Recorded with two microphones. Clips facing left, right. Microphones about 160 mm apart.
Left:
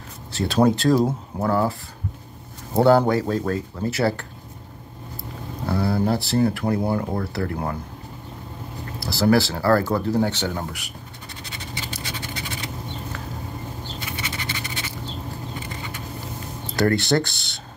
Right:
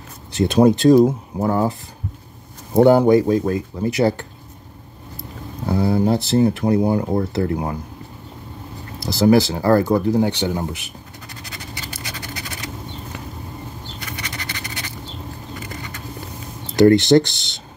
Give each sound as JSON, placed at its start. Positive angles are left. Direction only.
{"t": 0.3, "sound": "speech", "side_deg": -20}
{"t": 2.8, "sound": "speech", "side_deg": -15}
{"t": 5.7, "sound": "speech", "side_deg": -20}
{"t": 9.0, "sound": "speech", "side_deg": -20}
{"t": 11.4, "sound": "scratch", "side_deg": 25}
{"t": 14.3, "sound": "scratch", "side_deg": 25}
{"t": 16.7, "sound": "speech", "side_deg": -20}